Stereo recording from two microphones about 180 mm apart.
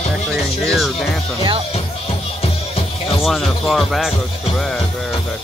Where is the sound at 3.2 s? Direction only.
Centre (ahead or behind).